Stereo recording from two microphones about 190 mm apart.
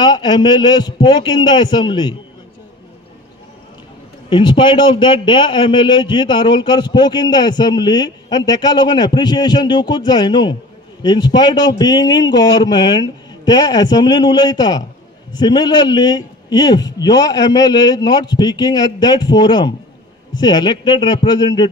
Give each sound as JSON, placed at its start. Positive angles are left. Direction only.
{"t": 0.0, "sound": "a man's voice", "side_deg": 20}
{"t": 4.3, "sound": "a man's voice", "side_deg": 25}